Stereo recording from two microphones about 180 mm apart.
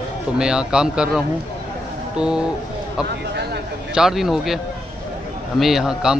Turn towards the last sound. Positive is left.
turn(degrees=-5)  # may be behind; listen again after turning